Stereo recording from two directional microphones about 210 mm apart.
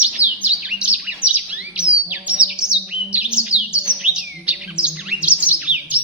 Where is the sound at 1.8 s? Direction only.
5° right (ahead or behind).